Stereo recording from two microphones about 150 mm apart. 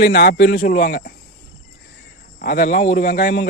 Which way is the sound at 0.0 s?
85° left.